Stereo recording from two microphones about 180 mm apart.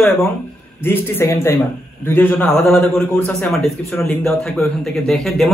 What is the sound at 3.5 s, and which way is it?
Speech, centre (ahead or behind).